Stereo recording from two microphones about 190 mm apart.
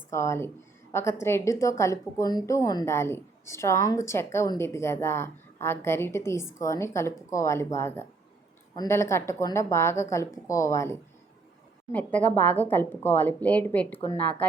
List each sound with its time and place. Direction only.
0.1 s a woman's voice: 15° left (ahead or behind)